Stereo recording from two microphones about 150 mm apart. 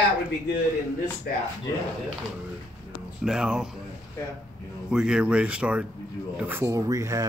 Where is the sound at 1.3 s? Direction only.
90° left.